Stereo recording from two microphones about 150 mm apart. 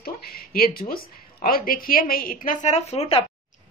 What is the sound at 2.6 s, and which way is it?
Speech, 45° left (ahead or behind).